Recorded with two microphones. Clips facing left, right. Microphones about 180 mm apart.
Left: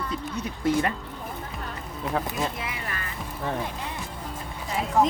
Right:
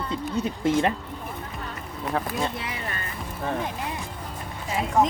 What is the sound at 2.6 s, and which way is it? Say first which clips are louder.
Music: right 1 dB; 30° right (ahead or behind).